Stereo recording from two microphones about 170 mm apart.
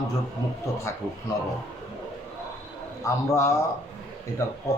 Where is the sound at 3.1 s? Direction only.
15° left (ahead or behind).